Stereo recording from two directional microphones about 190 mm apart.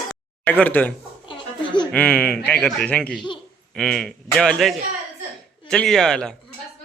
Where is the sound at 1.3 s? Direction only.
25° left (ahead or behind).